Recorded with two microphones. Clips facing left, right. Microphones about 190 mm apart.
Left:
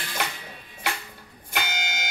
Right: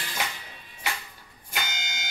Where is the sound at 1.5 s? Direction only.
65° left (ahead or behind).